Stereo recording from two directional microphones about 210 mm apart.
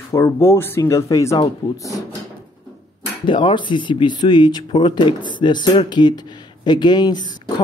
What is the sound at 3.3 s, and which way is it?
Speech, 20° left (ahead or behind).